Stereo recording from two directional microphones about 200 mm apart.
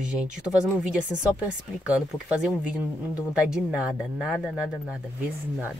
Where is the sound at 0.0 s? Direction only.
5° right (ahead or behind).